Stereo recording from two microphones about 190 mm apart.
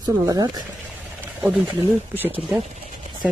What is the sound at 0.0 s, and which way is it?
Speech, 20° right (ahead or behind).